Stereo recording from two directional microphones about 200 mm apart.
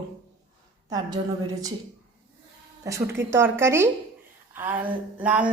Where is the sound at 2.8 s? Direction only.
15° right (ahead or behind).